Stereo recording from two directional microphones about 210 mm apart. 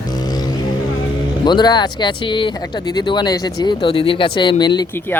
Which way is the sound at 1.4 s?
20° left (ahead or behind).